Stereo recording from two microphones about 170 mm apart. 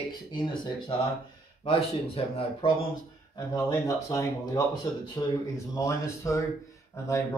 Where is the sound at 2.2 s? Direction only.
35° left (ahead or behind).